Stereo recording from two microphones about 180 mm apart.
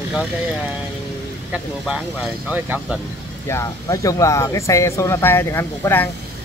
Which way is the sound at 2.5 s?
10° right (ahead or behind).